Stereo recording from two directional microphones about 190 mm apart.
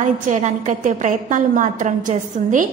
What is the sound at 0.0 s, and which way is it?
A woman's voice, 40° right (ahead or behind).